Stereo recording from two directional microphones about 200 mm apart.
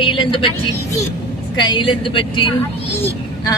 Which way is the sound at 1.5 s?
20° left (ahead or behind).